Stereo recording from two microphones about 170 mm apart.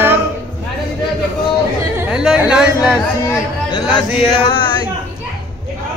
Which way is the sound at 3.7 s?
25° left (ahead or behind).